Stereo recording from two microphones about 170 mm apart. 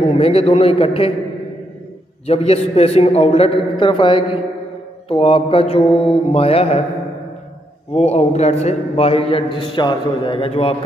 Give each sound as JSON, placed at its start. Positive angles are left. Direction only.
{"t": 0.2, "sound": "a man's voice", "side_deg": 35}
{"t": 2.2, "sound": "a man's voice", "side_deg": 40}
{"t": 7.9, "sound": "a man's voice", "side_deg": 40}